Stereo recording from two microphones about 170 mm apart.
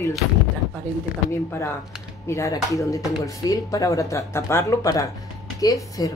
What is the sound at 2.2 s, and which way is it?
Speech, 15° left (ahead or behind).